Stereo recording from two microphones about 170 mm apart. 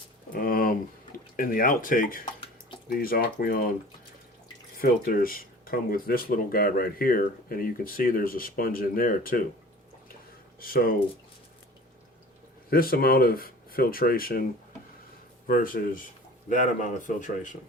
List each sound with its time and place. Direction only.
0.3 s a sound: 55° left (ahead or behind)
1.4 s speech: 55° left (ahead or behind)
4.8 s speech: 60° left (ahead or behind)
10.6 s speech: 60° left (ahead or behind)
12.7 s speech: 60° left (ahead or behind)
15.4 s speech: 55° left (ahead or behind)